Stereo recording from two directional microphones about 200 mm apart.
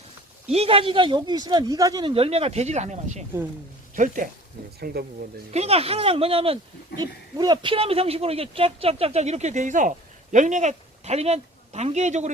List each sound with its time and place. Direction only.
0.5 s speech: 30° right (ahead or behind)
5.5 s speech: 30° right (ahead or behind)